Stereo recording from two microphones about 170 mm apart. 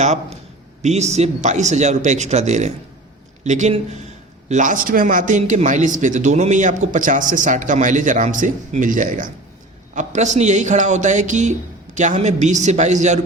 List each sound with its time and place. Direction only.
0.0 s speech: 40° right (ahead or behind)